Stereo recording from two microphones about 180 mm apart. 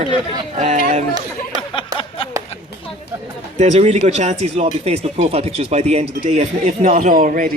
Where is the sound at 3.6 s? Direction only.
40° right (ahead or behind).